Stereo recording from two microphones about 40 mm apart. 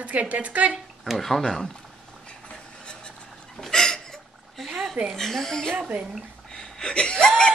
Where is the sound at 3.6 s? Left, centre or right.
Centre.